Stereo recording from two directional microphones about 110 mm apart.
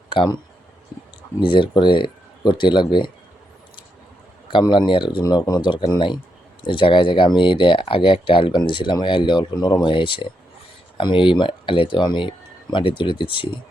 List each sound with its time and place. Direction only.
0.1 s speech: 50° left (ahead or behind)
1.4 s speech: 50° left (ahead or behind)
4.6 s speech: 45° left (ahead or behind)